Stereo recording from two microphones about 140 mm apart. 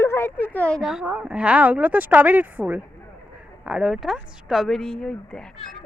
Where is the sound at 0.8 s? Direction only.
5° right (ahead or behind).